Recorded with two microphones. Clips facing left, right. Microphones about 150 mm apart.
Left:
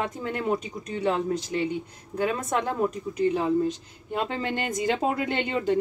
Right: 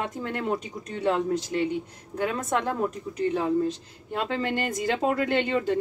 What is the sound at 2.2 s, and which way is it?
A woman's voice, 10° left (ahead or behind).